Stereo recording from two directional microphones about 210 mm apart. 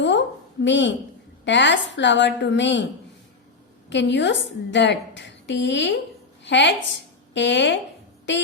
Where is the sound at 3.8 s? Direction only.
60° left (ahead or behind).